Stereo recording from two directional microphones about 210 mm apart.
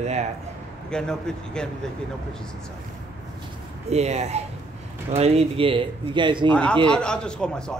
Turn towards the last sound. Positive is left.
turn(degrees=5)  # may be behind; listen again after turning